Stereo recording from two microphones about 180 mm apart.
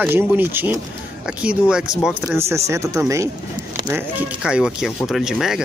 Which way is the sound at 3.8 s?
5° right (ahead or behind).